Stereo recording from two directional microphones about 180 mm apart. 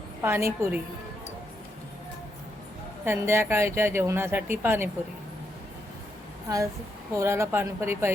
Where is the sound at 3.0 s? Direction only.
15° right (ahead or behind).